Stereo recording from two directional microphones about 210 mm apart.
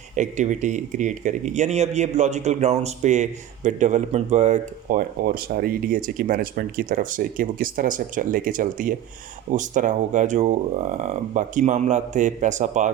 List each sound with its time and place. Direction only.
0.2 s speech: 35° right (ahead or behind)